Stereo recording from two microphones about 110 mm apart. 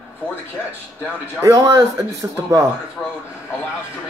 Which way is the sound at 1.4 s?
30° right (ahead or behind).